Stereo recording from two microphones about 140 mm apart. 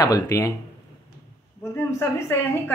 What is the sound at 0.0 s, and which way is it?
Speech, 25° left (ahead or behind).